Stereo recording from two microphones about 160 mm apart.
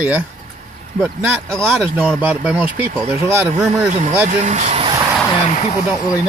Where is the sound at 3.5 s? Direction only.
45° right (ahead or behind).